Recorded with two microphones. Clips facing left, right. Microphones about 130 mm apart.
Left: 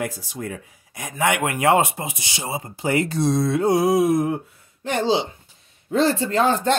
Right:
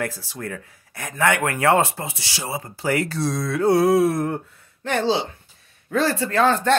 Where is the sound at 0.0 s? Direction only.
15° left (ahead or behind).